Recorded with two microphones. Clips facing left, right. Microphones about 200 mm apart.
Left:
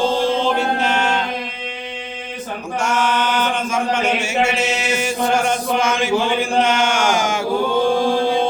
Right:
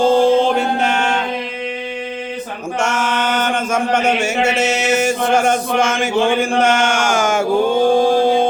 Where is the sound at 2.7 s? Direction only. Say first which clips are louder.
Even; 50° right (ahead or behind).